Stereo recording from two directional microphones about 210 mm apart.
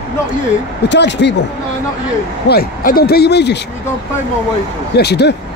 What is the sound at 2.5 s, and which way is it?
Speech, 45° left (ahead or behind).